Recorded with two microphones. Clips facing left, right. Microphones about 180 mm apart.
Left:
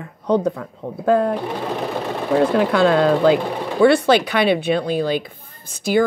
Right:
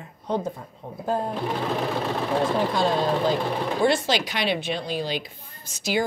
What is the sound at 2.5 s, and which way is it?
Speech, 70° left (ahead or behind).